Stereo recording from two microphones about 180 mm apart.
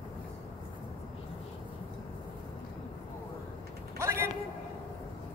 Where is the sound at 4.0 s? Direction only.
15° right (ahead or behind).